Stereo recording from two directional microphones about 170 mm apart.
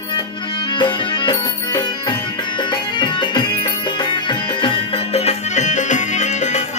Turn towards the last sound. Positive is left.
turn(degrees=45)  # may be behind; listen again after turning